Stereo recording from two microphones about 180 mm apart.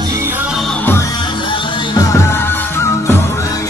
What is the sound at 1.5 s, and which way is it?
Music, 20° left (ahead or behind).